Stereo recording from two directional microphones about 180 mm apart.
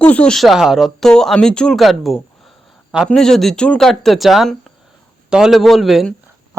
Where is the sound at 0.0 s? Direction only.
5° left (ahead or behind).